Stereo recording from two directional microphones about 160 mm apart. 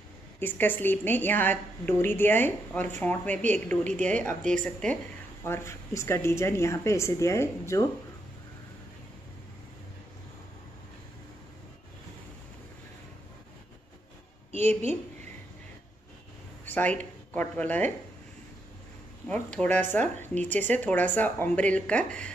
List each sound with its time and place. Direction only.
0.4 s a woman's voice: 10° left (ahead or behind)
14.5 s a woman's voice: 40° right (ahead or behind)
16.6 s speech: 10° left (ahead or behind)
19.2 s a woman's voice: 5° left (ahead or behind)